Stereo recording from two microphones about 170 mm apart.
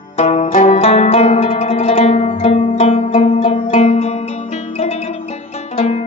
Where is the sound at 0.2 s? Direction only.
40° left (ahead or behind).